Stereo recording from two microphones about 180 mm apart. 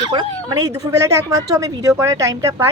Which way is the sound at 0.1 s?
20° right (ahead or behind).